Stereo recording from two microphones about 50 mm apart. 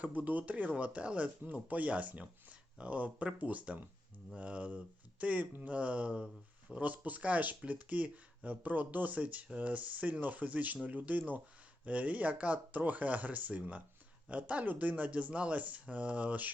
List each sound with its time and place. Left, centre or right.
0.0 s speech: right